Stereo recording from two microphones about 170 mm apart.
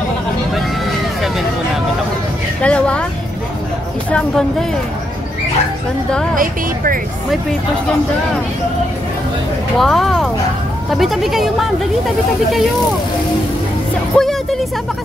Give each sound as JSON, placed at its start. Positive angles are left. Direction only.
{"t": 2.6, "sound": "a sound", "side_deg": 5}
{"t": 4.1, "sound": "speech", "side_deg": 5}
{"t": 6.3, "sound": "speech", "side_deg": -55}
{"t": 9.8, "sound": "speech", "side_deg": 0}
{"t": 14.1, "sound": "music", "side_deg": 0}